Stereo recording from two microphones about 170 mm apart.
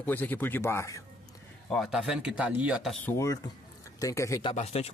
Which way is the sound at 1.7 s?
Centre (ahead or behind).